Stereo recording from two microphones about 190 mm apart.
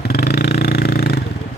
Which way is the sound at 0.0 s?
55° left (ahead or behind).